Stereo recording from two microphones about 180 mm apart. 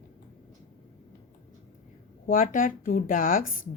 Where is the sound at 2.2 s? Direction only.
45° left (ahead or behind).